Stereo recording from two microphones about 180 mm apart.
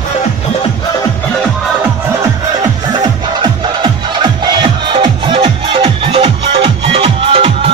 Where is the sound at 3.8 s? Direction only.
25° right (ahead or behind).